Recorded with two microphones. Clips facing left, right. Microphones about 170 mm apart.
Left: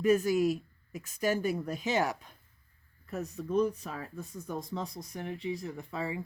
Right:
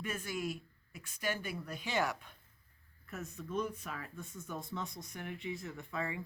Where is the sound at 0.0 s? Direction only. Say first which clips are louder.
Left 14 dB; 40° left (ahead or behind).